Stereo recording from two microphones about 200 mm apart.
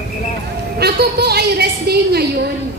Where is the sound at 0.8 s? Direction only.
55° right (ahead or behind).